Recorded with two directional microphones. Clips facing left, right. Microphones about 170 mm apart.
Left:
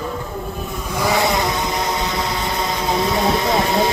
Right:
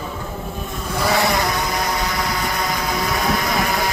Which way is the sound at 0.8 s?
15° left (ahead or behind).